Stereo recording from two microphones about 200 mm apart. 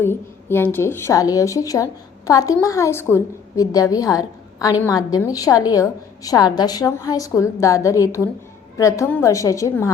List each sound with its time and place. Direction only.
0.0 s a woman's voice: 10° left (ahead or behind)